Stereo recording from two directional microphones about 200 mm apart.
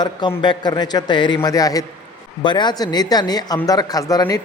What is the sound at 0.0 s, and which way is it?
Speech, 20° left (ahead or behind).